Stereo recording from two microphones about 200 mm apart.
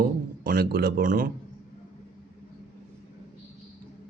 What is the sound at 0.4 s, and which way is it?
Speech, 50° right (ahead or behind).